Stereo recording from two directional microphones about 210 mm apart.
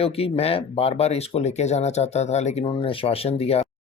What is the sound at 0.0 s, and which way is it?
Speech, 30° left (ahead or behind).